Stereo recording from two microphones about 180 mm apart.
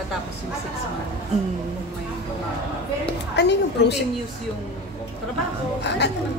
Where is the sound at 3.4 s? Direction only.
70° left (ahead or behind).